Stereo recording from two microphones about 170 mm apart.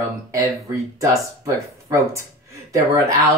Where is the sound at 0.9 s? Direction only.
20° right (ahead or behind).